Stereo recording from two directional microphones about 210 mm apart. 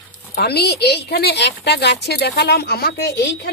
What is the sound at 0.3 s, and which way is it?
A woman's voice, 50° left (ahead or behind).